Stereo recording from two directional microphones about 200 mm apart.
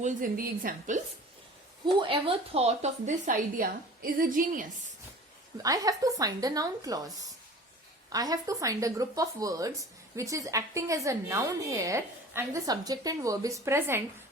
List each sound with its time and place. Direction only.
0.0 s a woman's voice: 45° right (ahead or behind)
2.0 s speech: 25° right (ahead or behind); by 4.6 s 40° right (ahead or behind)
5.6 s a woman's voice: 15° right (ahead or behind)